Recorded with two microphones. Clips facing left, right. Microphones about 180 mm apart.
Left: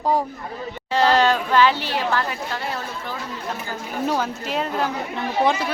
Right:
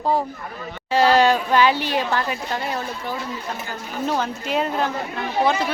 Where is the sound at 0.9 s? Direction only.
10° right (ahead or behind).